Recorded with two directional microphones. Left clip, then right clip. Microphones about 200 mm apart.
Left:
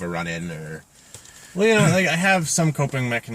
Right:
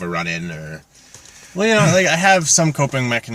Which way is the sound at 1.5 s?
20° right (ahead or behind).